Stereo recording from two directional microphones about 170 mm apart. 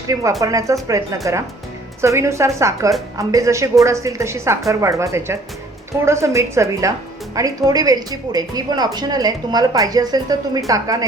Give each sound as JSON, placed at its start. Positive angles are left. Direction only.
{"t": 0.1, "sound": "a woman's voice", "side_deg": -20}